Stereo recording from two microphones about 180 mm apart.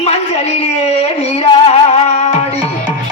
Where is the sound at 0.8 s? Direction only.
35° left (ahead or behind).